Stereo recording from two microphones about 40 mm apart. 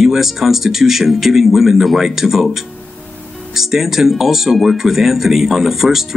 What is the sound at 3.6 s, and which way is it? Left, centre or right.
Speech, centre.